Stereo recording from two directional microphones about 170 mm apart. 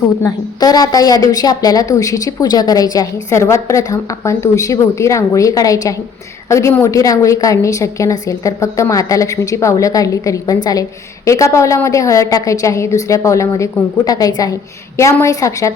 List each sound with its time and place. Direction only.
0.2 s a woman's voice: 20° left (ahead or behind)